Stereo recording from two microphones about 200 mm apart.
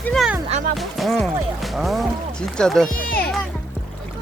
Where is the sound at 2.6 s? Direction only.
Centre (ahead or behind).